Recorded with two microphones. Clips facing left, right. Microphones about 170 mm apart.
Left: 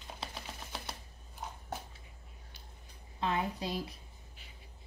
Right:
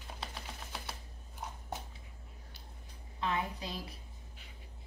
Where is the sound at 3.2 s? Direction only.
25° left (ahead or behind).